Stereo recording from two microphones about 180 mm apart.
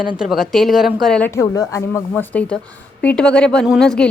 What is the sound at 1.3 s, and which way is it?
A woman's voice, 20° left (ahead or behind).